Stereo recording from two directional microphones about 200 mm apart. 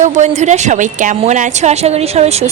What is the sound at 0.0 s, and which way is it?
A woman's voice, 35° right (ahead or behind).